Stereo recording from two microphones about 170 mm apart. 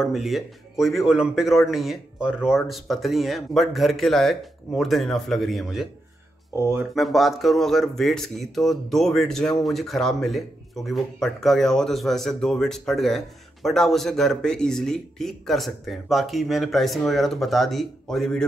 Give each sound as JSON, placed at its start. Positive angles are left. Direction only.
{"t": 0.0, "sound": "speech", "side_deg": 0}
{"t": 6.5, "sound": "speech", "side_deg": -15}
{"t": 7.0, "sound": "speech", "side_deg": 0}